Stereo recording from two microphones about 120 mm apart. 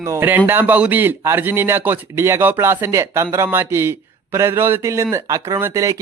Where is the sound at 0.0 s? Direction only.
20° right (ahead or behind).